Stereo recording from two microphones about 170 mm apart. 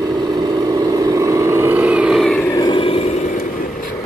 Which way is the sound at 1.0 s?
20° right (ahead or behind).